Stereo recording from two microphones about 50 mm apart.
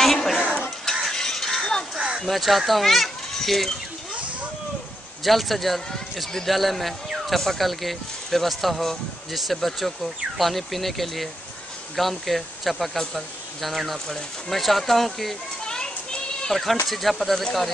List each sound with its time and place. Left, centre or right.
0.0 s a sound: centre
1.0 s stir: centre
2.0 s a sound: centre
2.2 s speech: centre
5.2 s speech: centre
15.6 s children playing: centre
16.8 s speech: centre